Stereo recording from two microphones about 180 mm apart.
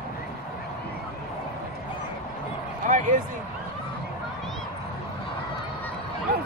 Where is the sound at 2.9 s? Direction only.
45° right (ahead or behind).